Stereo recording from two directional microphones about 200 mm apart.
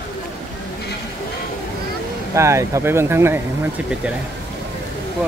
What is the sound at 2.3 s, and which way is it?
Speech, 15° right (ahead or behind).